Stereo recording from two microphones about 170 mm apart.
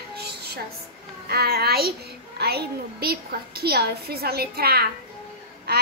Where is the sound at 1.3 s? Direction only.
70° right (ahead or behind).